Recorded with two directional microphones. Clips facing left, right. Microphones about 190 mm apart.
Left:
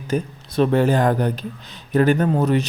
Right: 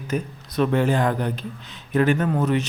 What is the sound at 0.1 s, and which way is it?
A man's voice, 30° left (ahead or behind).